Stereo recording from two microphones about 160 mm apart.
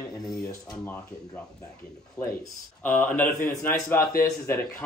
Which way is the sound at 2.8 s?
10° left (ahead or behind).